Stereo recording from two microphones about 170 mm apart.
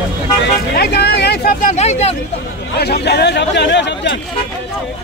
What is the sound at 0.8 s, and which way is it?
Speech, 75° left (ahead or behind).